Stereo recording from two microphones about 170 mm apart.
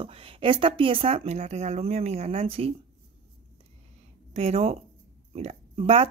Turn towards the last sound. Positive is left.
turn(degrees=-35)  # may be behind; listen again after turning